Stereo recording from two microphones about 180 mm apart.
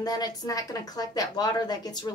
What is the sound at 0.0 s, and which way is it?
Speech, 20° left (ahead or behind).